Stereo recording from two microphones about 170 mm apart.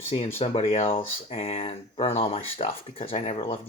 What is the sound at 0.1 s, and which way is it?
Speech, 35° left (ahead or behind).